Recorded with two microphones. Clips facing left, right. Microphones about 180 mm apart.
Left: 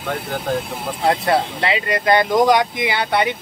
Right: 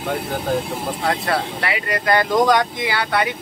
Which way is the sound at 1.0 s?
25° left (ahead or behind).